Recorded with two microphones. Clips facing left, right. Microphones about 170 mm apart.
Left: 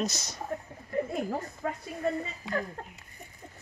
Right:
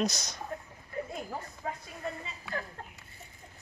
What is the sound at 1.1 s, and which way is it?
Speech, 55° left (ahead or behind).